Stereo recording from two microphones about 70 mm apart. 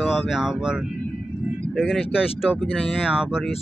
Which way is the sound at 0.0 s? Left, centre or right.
Centre.